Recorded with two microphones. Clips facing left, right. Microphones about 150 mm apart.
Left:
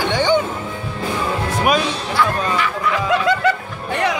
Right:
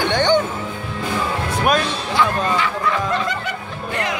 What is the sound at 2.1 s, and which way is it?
Speech, 25° right (ahead or behind).